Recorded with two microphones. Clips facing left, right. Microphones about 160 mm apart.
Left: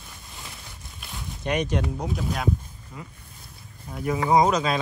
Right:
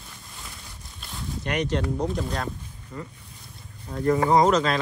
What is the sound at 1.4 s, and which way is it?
Speech, 15° left (ahead or behind).